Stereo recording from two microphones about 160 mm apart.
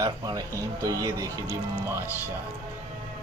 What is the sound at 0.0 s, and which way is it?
Speech, 20° right (ahead or behind).